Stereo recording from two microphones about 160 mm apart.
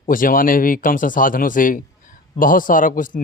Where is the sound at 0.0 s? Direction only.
60° left (ahead or behind).